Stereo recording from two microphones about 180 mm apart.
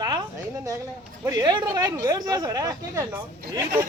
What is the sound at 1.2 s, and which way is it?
Speech, 25° right (ahead or behind).